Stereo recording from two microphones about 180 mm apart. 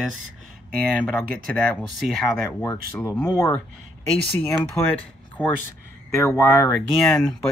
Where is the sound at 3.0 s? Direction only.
15° left (ahead or behind).